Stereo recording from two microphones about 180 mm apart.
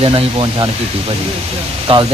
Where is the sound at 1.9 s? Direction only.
30° right (ahead or behind).